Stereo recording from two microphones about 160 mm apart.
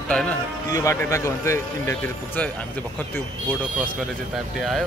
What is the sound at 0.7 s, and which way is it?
A man's voice, 20° left (ahead or behind).